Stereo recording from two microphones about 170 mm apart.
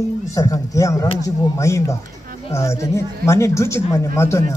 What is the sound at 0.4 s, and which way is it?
A man's voice, 20° left (ahead or behind).